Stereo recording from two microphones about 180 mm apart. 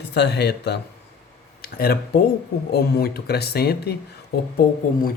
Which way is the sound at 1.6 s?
55° left (ahead or behind).